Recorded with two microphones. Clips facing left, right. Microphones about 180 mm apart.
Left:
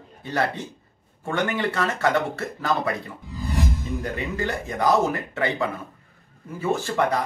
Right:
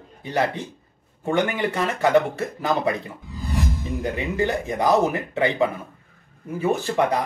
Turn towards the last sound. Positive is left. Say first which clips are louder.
# right 2 dB
turn(degrees=-20)  # may be behind; listen again after turning